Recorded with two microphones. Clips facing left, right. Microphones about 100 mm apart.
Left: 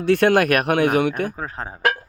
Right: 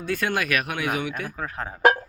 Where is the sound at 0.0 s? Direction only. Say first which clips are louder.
Left 10 dB; 70° left (ahead or behind).